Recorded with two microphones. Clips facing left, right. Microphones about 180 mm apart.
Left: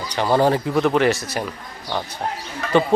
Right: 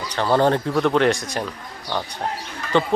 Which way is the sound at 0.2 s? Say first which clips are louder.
Left 1 dB; 10° left (ahead or behind).